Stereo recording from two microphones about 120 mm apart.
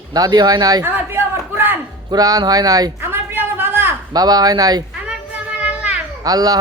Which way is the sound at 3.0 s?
20° right (ahead or behind).